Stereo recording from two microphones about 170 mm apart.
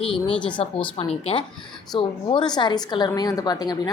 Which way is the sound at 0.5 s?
35° left (ahead or behind).